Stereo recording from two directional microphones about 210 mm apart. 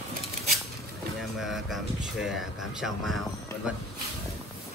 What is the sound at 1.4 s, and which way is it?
Speech, centre (ahead or behind).